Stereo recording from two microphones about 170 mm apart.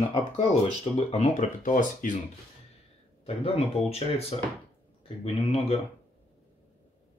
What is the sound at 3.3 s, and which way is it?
Speech, 35° left (ahead or behind).